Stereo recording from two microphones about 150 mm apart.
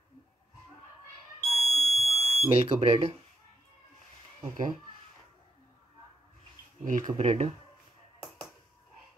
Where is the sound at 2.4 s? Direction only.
40° right (ahead or behind).